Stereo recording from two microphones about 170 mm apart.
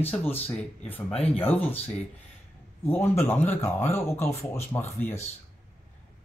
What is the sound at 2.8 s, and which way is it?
Speech, 15° left (ahead or behind).